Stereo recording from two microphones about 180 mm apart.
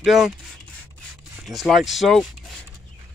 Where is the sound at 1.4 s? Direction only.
Centre (ahead or behind).